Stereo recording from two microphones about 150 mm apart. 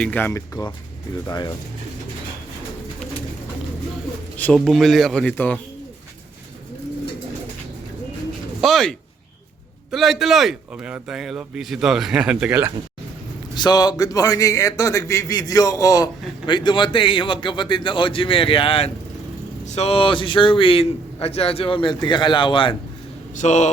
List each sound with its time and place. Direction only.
0.0 s a man's voice: 10° left (ahead or behind)
4.4 s a man's voice: 5° left (ahead or behind)
8.6 s a man's voice: 5° left (ahead or behind)
13.6 s a man's voice: 25° left (ahead or behind)
23.3 s speech: 55° left (ahead or behind)